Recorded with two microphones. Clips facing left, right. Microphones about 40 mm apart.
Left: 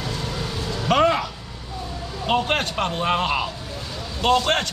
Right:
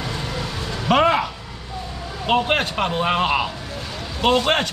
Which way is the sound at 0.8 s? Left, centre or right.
Centre.